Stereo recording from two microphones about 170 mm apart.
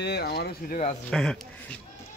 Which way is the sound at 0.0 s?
75° left (ahead or behind).